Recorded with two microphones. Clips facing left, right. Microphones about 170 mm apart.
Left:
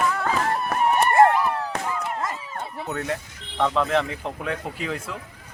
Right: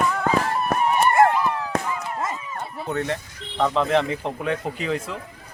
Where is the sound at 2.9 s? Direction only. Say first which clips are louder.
Right 3 dB; 5° left (ahead or behind).